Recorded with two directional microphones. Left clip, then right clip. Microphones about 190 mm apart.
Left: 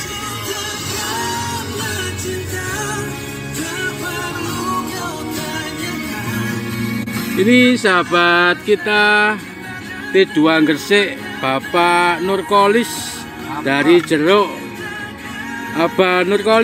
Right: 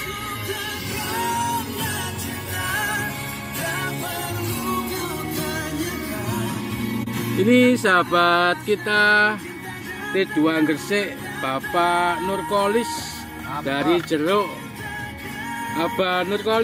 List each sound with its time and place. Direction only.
7.4 s speech: centre (ahead or behind); by 9.4 s 15° left (ahead or behind)
10.1 s speech: 30° left (ahead or behind)
15.7 s music: 30° left (ahead or behind)